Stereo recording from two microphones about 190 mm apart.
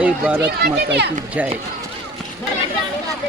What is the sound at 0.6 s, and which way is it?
Speech, 60° right (ahead or behind).